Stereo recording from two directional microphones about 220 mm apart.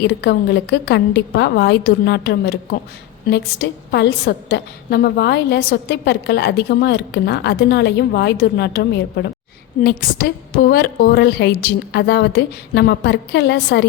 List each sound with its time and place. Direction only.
0.0 s a woman's voice: 50° left (ahead or behind)